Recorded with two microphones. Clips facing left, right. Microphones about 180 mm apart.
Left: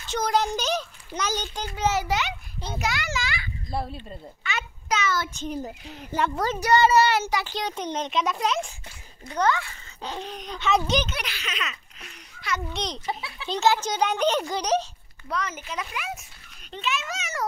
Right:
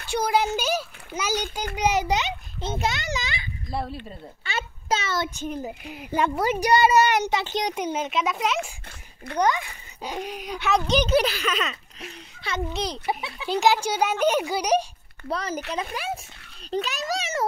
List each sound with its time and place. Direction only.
0.0 s a child's voice: 10° right (ahead or behind)
3.7 s speech: centre (ahead or behind)
4.4 s child singing: 30° right (ahead or behind)
5.7 s a child's voice: 15° right (ahead or behind)
9.4 s a child's voice: 15° right (ahead or behind)
11.1 s speech: 35° right (ahead or behind)
12.0 s a child's voice: 30° right (ahead or behind)
12.7 s a child's voice: 5° right (ahead or behind)
15.2 s speech: 30° right (ahead or behind)